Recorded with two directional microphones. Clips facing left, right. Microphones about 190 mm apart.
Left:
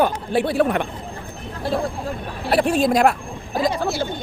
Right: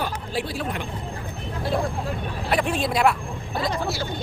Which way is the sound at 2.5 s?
40° left (ahead or behind).